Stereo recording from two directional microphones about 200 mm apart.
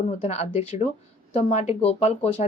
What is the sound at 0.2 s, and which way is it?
Speech, 30° left (ahead or behind).